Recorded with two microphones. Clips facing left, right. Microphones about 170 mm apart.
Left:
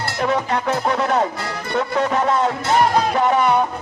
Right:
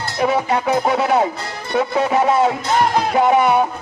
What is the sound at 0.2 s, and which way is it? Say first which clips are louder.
Music: right 3 dB; 10° right (ahead or behind).